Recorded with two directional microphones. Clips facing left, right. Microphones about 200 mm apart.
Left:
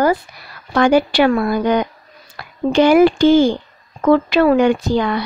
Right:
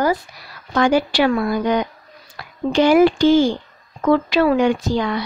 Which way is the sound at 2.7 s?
60° left (ahead or behind).